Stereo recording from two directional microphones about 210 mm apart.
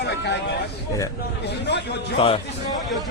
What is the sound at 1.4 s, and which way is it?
Speech, 55° left (ahead or behind).